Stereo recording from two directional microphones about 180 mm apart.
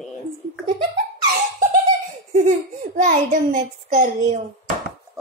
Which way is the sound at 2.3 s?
45° right (ahead or behind).